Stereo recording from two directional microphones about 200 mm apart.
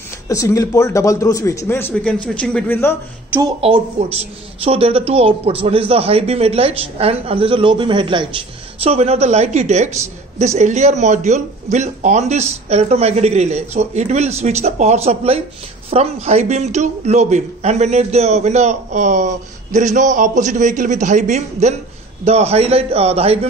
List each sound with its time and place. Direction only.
0.3 s a man's voice: 15° left (ahead or behind)
3.6 s a woman's voice: 30° right (ahead or behind)